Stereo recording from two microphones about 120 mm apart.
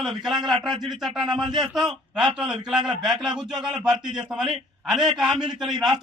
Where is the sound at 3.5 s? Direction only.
35° right (ahead or behind).